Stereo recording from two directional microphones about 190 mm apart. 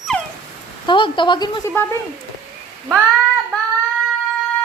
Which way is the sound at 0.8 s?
25° left (ahead or behind).